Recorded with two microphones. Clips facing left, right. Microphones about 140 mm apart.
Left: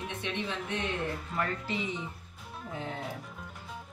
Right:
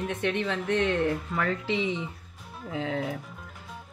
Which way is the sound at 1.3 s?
90° right.